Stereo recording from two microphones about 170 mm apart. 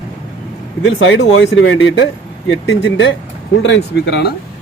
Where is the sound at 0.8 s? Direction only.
90° left.